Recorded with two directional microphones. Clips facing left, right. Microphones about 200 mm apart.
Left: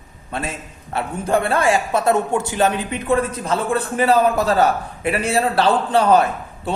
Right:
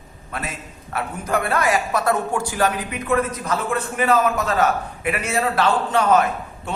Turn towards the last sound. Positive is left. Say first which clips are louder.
# left 3 dB
turn(degrees=35)  # may be behind; listen again after turning